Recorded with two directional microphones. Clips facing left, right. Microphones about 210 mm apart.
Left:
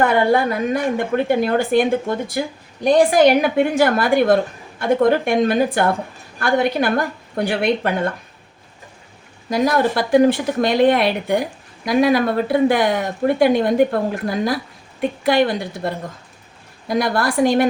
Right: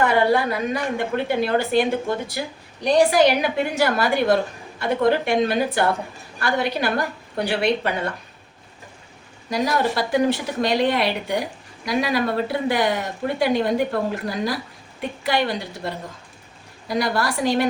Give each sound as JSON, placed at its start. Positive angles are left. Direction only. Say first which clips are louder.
{"t": 0.0, "sound": "a woman's voice", "louder": "left 3 dB", "side_deg": 50}
{"t": 9.5, "sound": "a woman's voice", "louder": "left 4 dB", "side_deg": 55}
{"t": 17.0, "sound": "a woman's voice", "louder": "left 5 dB", "side_deg": 50}